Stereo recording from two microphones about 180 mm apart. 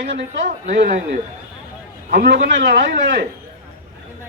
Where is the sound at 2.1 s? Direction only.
55° right (ahead or behind); by 2.9 s 75° right (ahead or behind).